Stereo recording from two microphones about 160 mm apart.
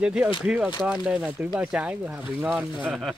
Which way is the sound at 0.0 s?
5° right (ahead or behind).